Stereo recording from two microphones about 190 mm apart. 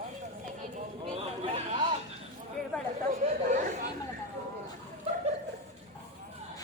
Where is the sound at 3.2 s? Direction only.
35° right (ahead or behind).